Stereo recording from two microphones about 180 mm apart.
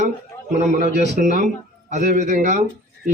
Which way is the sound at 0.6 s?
45° right (ahead or behind).